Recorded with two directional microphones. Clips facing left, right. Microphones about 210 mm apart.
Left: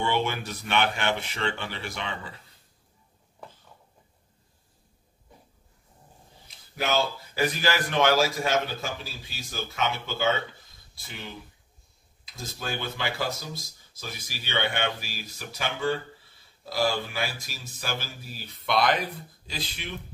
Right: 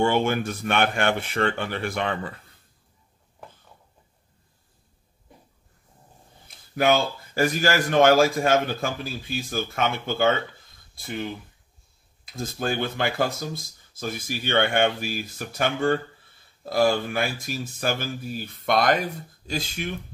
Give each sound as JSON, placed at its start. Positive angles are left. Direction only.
{"t": 0.0, "sound": "a man's voice", "side_deg": -50}
{"t": 6.4, "sound": "a man's voice", "side_deg": -50}
{"t": 12.3, "sound": "a man's voice", "side_deg": -50}